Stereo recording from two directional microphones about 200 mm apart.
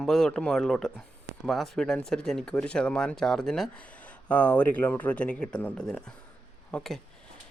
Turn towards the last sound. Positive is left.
turn(degrees=5)  # may be behind; listen again after turning